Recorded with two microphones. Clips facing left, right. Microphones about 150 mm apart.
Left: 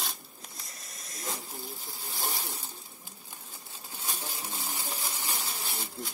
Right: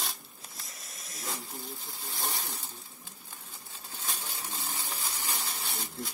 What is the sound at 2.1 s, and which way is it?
Speech, centre (ahead or behind).